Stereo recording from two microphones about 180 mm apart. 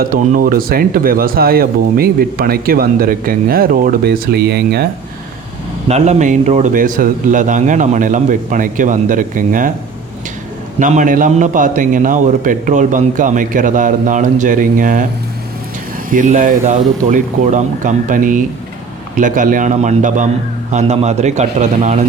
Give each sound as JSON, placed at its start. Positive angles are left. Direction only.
{"t": 0.0, "sound": "speech", "side_deg": -50}
{"t": 5.9, "sound": "a man's voice", "side_deg": -40}
{"t": 10.8, "sound": "a man's voice", "side_deg": -45}
{"t": 16.0, "sound": "a man's voice", "side_deg": -45}